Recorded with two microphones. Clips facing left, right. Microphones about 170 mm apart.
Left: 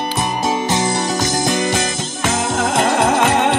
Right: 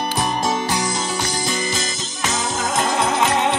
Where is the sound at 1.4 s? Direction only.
55° left (ahead or behind).